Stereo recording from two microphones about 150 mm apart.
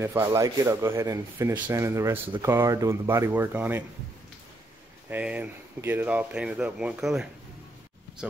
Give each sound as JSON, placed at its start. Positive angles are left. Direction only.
{"t": 0.0, "sound": "a man's voice", "side_deg": -20}
{"t": 5.1, "sound": "speech", "side_deg": -10}